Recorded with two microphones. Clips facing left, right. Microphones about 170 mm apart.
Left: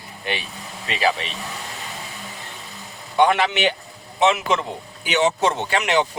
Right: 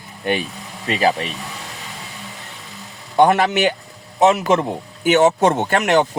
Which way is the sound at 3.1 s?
45° right (ahead or behind).